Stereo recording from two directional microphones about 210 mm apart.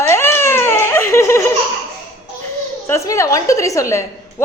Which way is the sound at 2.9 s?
15° left (ahead or behind).